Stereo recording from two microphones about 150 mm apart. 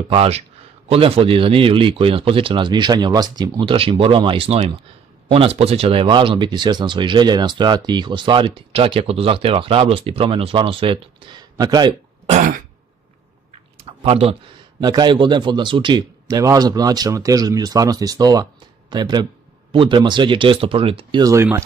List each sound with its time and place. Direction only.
0.1 s speech: 40° right (ahead or behind)
12.3 s throat clearing: 60° right (ahead or behind)
13.8 s a sound: 40° right (ahead or behind)
14.8 s a man's voice: 30° right (ahead or behind)
21.2 s a man's voice: 20° right (ahead or behind)